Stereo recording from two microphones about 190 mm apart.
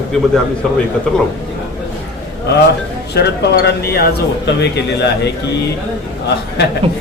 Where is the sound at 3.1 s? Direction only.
60° left (ahead or behind).